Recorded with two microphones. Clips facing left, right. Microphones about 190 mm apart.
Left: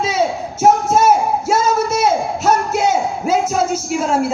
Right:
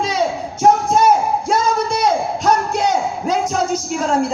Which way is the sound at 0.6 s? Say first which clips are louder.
Left 1 dB; 5° left (ahead or behind).